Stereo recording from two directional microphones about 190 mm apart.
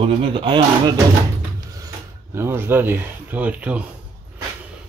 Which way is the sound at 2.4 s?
10° right (ahead or behind).